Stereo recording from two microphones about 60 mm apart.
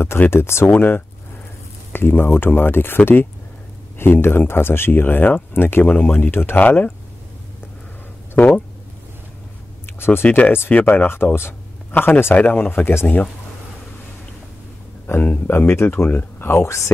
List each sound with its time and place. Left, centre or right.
0.0 s speech: left
4.0 s speech: left
5.9 s speech: left
8.4 s speech: centre
9.8 s speech: left
10.3 s speech: left
15.2 s speech: left
15.6 s speech: left
16.5 s speech: left